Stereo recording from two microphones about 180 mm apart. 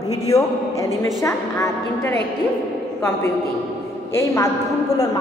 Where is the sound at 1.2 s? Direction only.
15° left (ahead or behind).